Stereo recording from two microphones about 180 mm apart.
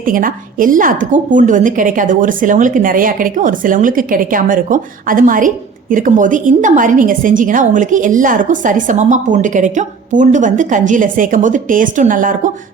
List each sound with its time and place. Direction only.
0.0 s a woman's voice: 50° right (ahead or behind)